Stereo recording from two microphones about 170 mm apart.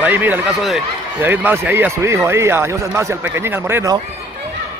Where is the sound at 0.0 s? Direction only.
10° right (ahead or behind).